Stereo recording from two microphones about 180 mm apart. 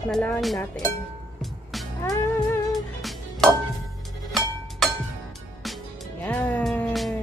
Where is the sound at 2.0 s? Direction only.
20° left (ahead or behind).